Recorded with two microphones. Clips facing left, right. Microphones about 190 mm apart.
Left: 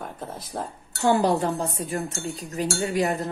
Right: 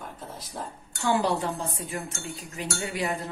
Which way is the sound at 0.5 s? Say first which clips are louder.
Left 5 dB; 60° left (ahead or behind).